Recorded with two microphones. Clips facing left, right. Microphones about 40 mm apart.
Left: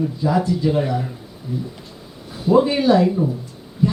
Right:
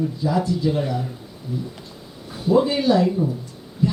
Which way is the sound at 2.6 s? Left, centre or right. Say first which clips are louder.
Left 3 dB; centre.